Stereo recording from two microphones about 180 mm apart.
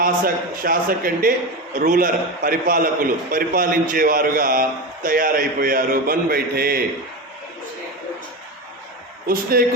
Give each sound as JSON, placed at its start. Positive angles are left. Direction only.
{"t": 0.6, "sound": "a man's voice", "side_deg": -55}
{"t": 9.2, "sound": "a man's voice", "side_deg": -55}